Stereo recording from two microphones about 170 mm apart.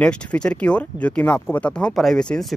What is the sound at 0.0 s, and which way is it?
Speech, 5° left (ahead or behind).